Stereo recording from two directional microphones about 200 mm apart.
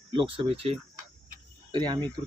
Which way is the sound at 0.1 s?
25° right (ahead or behind).